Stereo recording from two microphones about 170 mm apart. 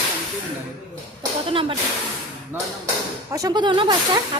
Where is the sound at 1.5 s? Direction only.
30° right (ahead or behind).